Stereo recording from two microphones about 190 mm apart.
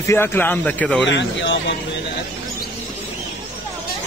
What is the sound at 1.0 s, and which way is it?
Speech, 70° left (ahead or behind).